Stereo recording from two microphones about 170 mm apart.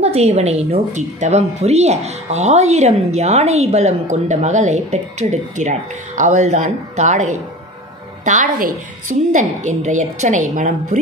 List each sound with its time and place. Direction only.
0.0 s a woman's voice: 40° right (ahead or behind)